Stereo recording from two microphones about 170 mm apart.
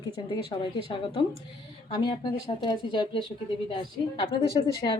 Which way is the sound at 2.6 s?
30° left (ahead or behind).